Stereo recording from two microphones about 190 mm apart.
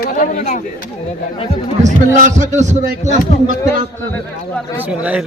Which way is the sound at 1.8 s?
40° right (ahead or behind).